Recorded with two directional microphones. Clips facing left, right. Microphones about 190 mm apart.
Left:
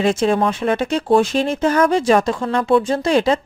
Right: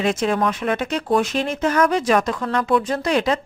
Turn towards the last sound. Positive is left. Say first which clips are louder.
# left 4 dB
turn(degrees=30)  # may be behind; listen again after turning